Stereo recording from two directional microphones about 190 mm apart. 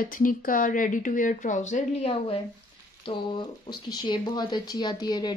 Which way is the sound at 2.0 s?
30° left (ahead or behind).